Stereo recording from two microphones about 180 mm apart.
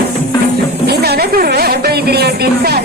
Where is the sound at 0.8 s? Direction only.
60° right (ahead or behind).